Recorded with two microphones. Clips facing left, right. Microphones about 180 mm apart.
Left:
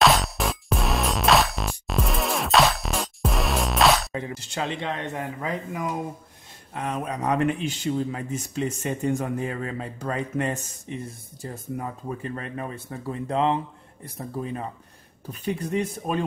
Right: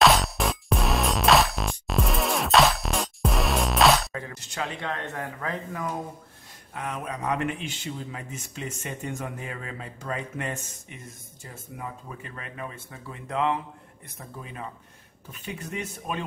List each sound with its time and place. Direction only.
0.0 s music: centre (ahead or behind)
4.5 s speech: 25° left (ahead or behind)
6.7 s speech: 30° left (ahead or behind)